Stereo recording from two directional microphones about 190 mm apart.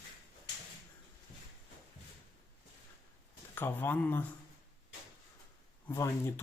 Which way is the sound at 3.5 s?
10° left (ahead or behind).